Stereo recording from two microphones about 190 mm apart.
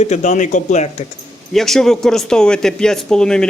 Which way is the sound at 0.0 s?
40° left (ahead or behind).